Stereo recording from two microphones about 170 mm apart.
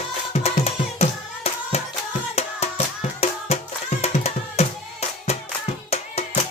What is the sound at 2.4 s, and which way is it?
Music, 40° left (ahead or behind).